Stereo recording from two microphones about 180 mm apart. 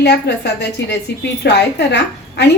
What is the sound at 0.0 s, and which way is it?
A woman's voice, 70° left (ahead or behind).